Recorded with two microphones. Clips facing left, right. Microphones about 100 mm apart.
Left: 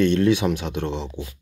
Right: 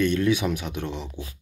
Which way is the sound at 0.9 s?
20° left (ahead or behind).